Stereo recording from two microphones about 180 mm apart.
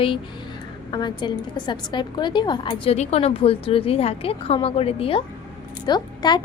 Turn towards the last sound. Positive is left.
turn(degrees=25)  # may be behind; listen again after turning